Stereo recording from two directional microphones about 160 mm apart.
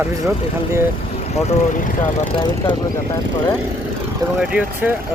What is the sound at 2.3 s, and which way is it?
Speech, 30° left (ahead or behind).